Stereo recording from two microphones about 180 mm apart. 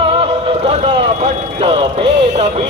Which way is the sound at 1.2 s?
30° right (ahead or behind).